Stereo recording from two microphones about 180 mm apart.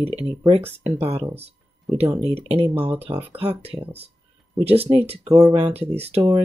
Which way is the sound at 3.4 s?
35° right (ahead or behind).